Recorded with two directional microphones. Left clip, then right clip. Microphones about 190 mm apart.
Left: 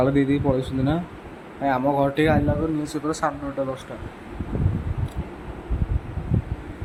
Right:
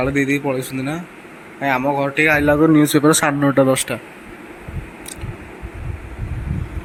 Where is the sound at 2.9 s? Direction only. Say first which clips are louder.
Right 13 dB; 60° right (ahead or behind).